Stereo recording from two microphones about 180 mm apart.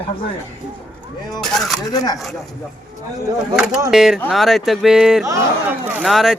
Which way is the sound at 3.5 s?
5° right (ahead or behind).